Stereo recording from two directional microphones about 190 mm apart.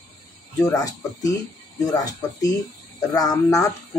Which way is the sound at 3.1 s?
20° left (ahead or behind).